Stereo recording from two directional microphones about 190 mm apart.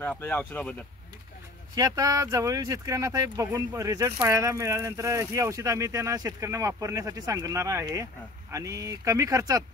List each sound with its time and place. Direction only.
0.0 s speech: 10° left (ahead or behind)
1.8 s speech: 15° right (ahead or behind)